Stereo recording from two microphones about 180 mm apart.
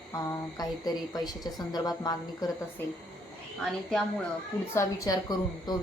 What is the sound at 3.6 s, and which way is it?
Speech, centre (ahead or behind).